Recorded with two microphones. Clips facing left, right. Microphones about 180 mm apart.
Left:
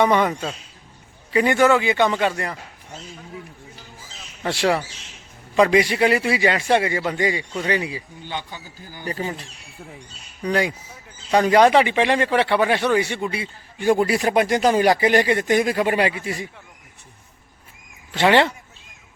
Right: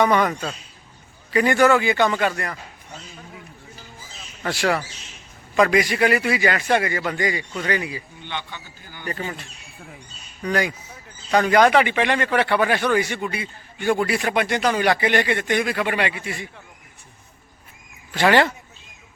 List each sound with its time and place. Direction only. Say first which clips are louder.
0.0 s speech: left 1 dB; 25° left (ahead or behind)
1.3 s speech: even; 20° left (ahead or behind)
4.4 s speech: left 2 dB; 25° left (ahead or behind)
8.2 s speech: left 2 dB; 40° left (ahead or behind)
10.5 s speech: left 1 dB; 25° left (ahead or behind)
18.1 s speech: left 1 dB; 25° left (ahead or behind)